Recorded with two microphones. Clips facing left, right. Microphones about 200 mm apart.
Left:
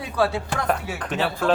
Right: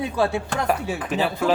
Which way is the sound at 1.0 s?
5° right (ahead or behind).